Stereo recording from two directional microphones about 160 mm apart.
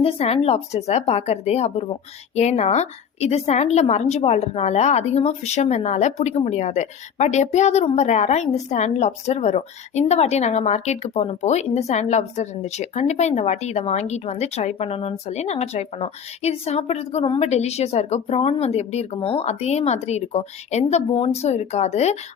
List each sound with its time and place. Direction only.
0.0 s speech: 40° left (ahead or behind)